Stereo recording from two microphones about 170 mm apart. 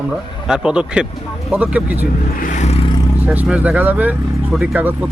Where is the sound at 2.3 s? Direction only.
50° left (ahead or behind).